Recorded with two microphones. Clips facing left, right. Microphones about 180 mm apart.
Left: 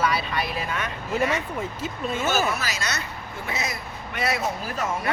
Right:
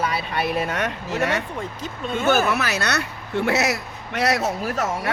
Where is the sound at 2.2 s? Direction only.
65° right (ahead or behind).